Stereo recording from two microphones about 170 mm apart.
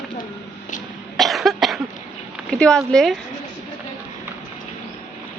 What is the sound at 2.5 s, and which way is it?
Speech, 5° left (ahead or behind).